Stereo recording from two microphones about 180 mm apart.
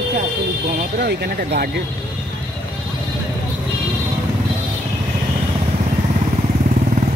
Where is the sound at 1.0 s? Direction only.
65° right (ahead or behind).